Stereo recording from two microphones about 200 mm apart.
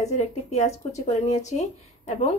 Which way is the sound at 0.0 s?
35° left (ahead or behind).